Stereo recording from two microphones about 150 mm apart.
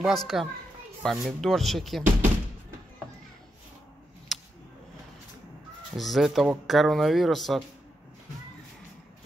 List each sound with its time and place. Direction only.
0.0 s speech: centre (ahead or behind)
4.3 s a sound: centre (ahead or behind)
5.9 s speech: centre (ahead or behind)